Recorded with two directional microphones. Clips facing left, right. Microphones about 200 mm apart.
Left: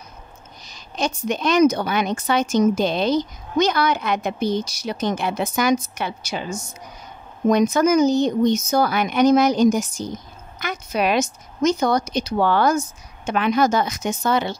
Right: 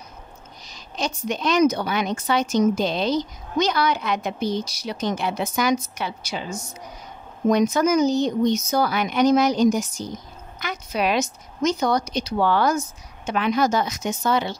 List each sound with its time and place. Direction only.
0.7 s a woman's voice: 55° left (ahead or behind)